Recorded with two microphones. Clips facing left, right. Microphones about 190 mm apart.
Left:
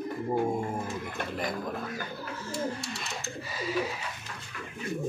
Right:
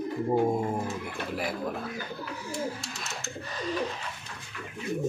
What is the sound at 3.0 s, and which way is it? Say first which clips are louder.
Bird: even; centre (ahead or behind).